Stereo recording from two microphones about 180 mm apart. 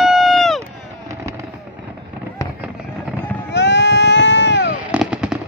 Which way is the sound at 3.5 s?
75° left (ahead or behind).